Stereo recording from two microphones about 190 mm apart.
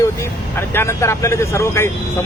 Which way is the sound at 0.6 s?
15° left (ahead or behind).